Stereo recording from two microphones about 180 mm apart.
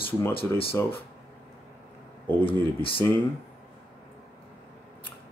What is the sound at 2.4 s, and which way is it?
Speech, 30° left (ahead or behind).